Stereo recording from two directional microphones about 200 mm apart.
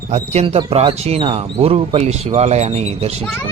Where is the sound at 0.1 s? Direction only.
30° right (ahead or behind).